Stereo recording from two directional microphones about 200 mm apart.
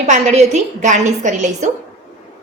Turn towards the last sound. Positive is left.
turn(degrees=-35)  # may be behind; listen again after turning